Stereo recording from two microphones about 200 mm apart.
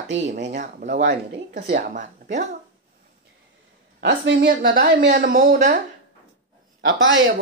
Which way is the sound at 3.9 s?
55° right (ahead or behind).